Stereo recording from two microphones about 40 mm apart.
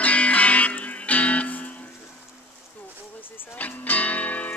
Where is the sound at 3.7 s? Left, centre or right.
Left.